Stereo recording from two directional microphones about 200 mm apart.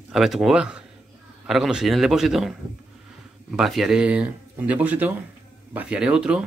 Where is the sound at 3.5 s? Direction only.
Centre (ahead or behind).